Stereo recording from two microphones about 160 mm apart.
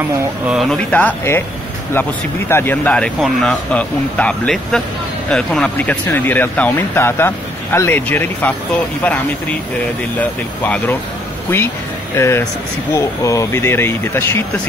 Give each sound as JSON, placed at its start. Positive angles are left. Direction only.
{"t": 0.5, "sound": "speech", "side_deg": 0}
{"t": 10.6, "sound": "speech", "side_deg": 10}
{"t": 12.2, "sound": "speech", "side_deg": 15}